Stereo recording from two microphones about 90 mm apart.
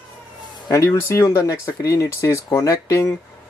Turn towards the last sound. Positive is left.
turn(degrees=35)  # may be behind; listen again after turning